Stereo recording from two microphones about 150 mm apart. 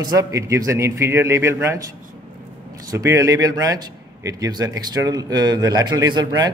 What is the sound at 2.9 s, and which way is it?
A man's voice, 20° right (ahead or behind).